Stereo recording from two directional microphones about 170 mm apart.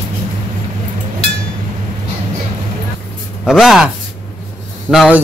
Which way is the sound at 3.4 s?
Centre (ahead or behind).